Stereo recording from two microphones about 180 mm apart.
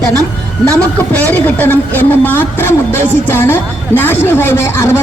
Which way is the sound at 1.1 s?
10° left (ahead or behind).